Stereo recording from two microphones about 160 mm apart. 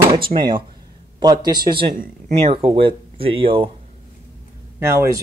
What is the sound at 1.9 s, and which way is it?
Speech, 45° right (ahead or behind).